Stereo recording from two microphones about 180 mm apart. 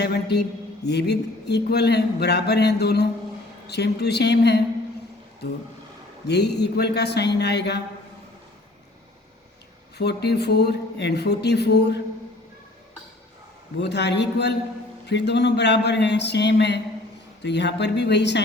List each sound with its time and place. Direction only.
0.0 s speech: 65° left (ahead or behind)
6.2 s speech: 65° left (ahead or behind)
10.0 s speech: 65° left (ahead or behind)
13.8 s speech: 70° left (ahead or behind)